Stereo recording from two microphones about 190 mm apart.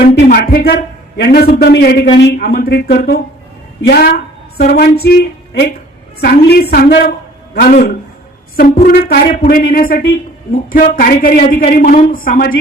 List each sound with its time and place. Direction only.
0.0 s a man's voice: 50° left (ahead or behind)
6.1 s a woman's voice: 55° left (ahead or behind)